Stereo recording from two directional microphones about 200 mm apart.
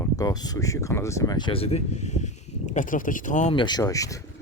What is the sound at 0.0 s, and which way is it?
Speech, 20° left (ahead or behind).